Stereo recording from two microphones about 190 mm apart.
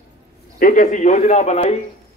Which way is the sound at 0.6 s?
45° left (ahead or behind).